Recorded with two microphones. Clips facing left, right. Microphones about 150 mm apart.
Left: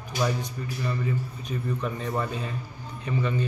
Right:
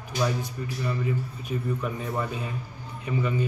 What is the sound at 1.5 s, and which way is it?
A man's voice, 10° right (ahead or behind).